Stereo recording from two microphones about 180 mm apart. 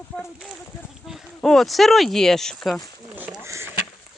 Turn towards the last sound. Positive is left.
turn(degrees=-15)  # may be behind; listen again after turning